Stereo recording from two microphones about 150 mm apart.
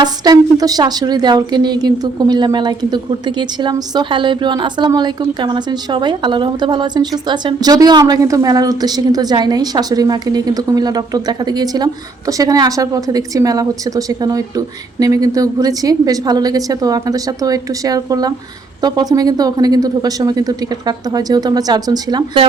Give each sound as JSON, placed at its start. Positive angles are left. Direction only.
{"t": 0.0, "sound": "a woman's voice", "side_deg": -25}